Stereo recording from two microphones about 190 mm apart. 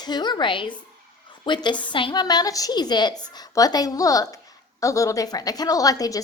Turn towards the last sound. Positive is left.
turn(degrees=20)  # may be behind; listen again after turning